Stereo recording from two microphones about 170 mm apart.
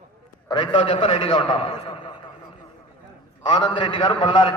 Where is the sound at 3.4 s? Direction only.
25° left (ahead or behind).